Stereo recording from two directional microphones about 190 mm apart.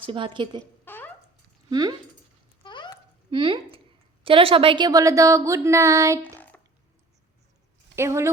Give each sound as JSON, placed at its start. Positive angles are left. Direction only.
{"t": 0.0, "sound": "a woman's voice", "side_deg": -25}
{"t": 0.9, "sound": "a sound", "side_deg": 10}
{"t": 1.7, "sound": "a woman's voice", "side_deg": -20}
{"t": 2.6, "sound": "a sound", "side_deg": 25}
{"t": 3.2, "sound": "a woman's voice", "side_deg": -25}
{"t": 7.9, "sound": "speech", "side_deg": -15}